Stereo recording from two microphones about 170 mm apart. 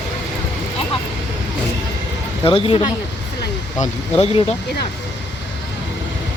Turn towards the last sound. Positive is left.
turn(degrees=35)  # may be behind; listen again after turning